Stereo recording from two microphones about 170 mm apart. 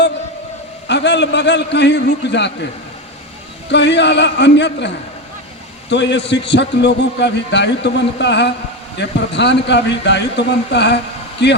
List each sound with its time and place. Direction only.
0.9 s a man's voice: 90° left
3.7 s a man's voice: 90° left
5.9 s a man's voice: 90° left